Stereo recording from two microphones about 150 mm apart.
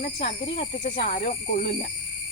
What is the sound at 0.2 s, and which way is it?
Speech, 40° left (ahead or behind).